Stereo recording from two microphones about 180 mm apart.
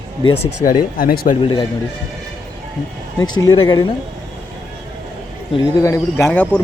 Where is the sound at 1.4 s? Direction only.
25° left (ahead or behind).